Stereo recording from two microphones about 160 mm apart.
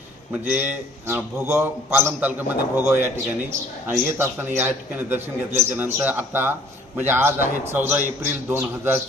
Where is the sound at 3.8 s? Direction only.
15° right (ahead or behind).